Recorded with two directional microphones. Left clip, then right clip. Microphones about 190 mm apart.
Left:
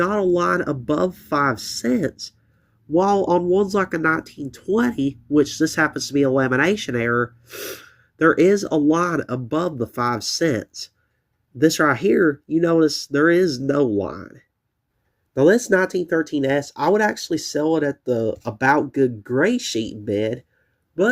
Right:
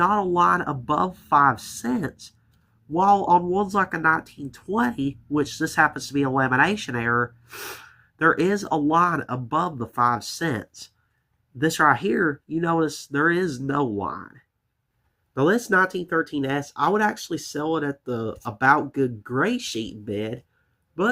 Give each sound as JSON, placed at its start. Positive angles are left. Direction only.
{"t": 0.0, "sound": "speech", "side_deg": 15}
{"t": 15.3, "sound": "speech", "side_deg": 15}